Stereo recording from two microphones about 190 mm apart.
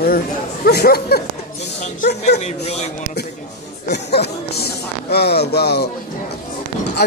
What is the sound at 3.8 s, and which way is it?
Speech, 60° left (ahead or behind).